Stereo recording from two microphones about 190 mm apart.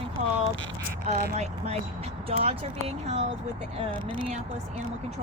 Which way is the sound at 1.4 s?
35° right (ahead or behind).